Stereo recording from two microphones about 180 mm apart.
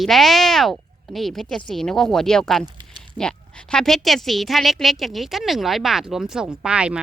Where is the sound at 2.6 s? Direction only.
25° right (ahead or behind).